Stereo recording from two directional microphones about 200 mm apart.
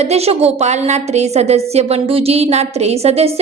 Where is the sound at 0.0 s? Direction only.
30° right (ahead or behind).